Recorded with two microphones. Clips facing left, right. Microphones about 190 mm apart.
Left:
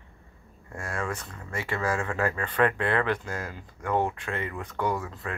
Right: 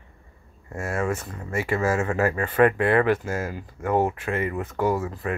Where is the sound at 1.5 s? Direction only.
10° right (ahead or behind).